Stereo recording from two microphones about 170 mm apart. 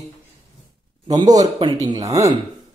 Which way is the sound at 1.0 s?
20° right (ahead or behind).